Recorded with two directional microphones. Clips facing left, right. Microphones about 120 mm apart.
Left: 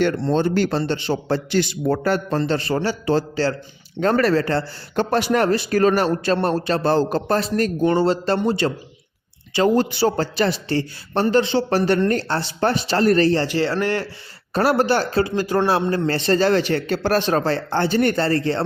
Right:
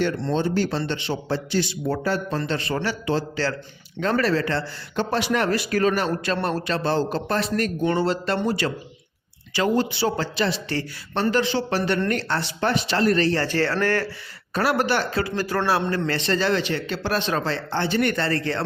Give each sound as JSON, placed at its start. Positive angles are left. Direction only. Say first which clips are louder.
{"t": 0.0, "sound": "speech", "louder": "left 4 dB", "side_deg": 50}
{"t": 0.7, "sound": "speech", "louder": "left 4 dB", "side_deg": 40}
{"t": 1.9, "sound": "speech", "louder": "left 5 dB", "side_deg": 55}
{"t": 2.4, "sound": "speech", "louder": "left 5 dB", "side_deg": 35}
{"t": 5.5, "sound": "speech", "louder": "left 4 dB", "side_deg": 30}
{"t": 5.8, "sound": "speech", "louder": "left 6 dB", "side_deg": 40}
{"t": 9.7, "sound": "speech", "louder": "left 4 dB", "side_deg": 45}
{"t": 11.1, "sound": "speech", "louder": "left 4 dB", "side_deg": 35}
{"t": 13.4, "sound": "speech", "louder": "left 2 dB", "side_deg": 15}
{"t": 14.5, "sound": "speech", "louder": "left 4 dB", "side_deg": 35}
{"t": 15.4, "sound": "speech", "louder": "left 2 dB", "side_deg": 20}
{"t": 16.0, "sound": "speech", "louder": "left 5 dB", "side_deg": 40}